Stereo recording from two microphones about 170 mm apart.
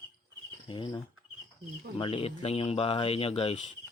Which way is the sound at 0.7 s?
30° left (ahead or behind).